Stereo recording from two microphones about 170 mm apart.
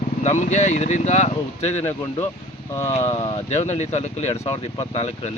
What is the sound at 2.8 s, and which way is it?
Speech, 40° left (ahead or behind).